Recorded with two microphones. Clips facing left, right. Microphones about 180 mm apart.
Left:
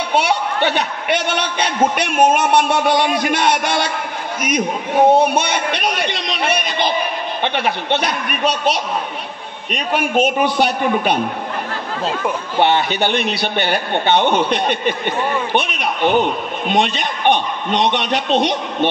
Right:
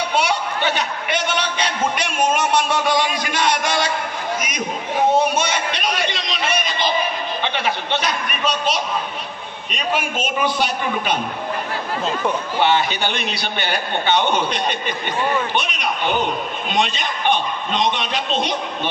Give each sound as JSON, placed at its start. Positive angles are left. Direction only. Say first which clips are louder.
{"t": 0.1, "sound": "a man's voice", "louder": "left 3 dB", "side_deg": 60}
{"t": 12.5, "sound": "a man's voice", "louder": "left 4 dB", "side_deg": 55}